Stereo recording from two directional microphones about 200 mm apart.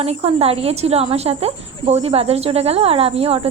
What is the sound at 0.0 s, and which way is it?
A woman's voice, 30° right (ahead or behind).